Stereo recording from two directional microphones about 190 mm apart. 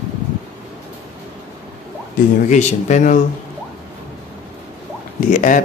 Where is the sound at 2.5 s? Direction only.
40° left (ahead or behind).